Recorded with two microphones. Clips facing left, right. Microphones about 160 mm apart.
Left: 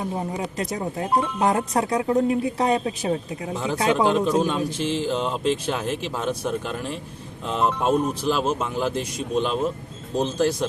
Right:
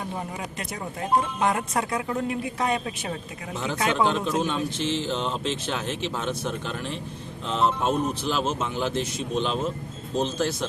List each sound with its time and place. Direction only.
0.2 s speech: 35° left (ahead or behind)
3.5 s speech: 10° left (ahead or behind)